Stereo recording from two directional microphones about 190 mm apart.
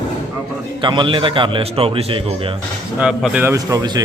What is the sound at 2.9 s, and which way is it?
A man's voice, 5° right (ahead or behind).